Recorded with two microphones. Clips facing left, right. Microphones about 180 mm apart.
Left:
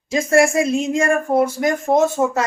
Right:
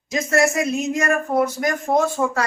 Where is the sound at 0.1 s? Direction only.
30° left (ahead or behind).